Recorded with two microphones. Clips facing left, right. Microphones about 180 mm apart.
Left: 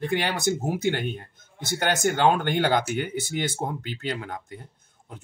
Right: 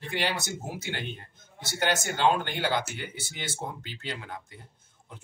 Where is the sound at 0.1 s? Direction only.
50° left (ahead or behind).